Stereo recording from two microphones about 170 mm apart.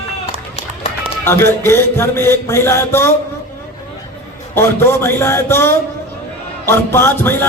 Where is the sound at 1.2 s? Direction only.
15° left (ahead or behind).